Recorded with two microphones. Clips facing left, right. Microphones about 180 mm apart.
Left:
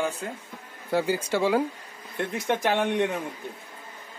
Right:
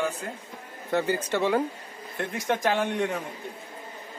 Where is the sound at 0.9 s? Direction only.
10° left (ahead or behind).